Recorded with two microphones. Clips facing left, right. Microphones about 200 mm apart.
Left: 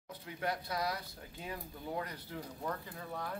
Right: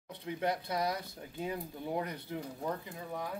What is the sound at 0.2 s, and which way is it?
Speech, 25° right (ahead or behind).